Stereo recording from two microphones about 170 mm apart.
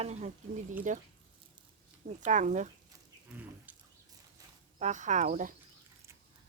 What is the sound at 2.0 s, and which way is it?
Speech, 45° right (ahead or behind).